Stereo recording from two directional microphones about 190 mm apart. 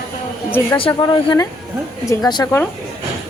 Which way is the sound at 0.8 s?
25° left (ahead or behind).